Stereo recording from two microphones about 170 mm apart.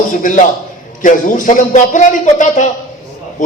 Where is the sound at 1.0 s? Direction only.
50° left (ahead or behind).